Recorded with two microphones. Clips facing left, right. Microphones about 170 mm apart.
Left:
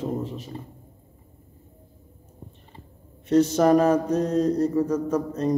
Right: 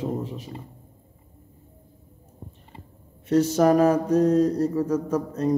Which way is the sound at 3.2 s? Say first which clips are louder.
Even; 10° right (ahead or behind).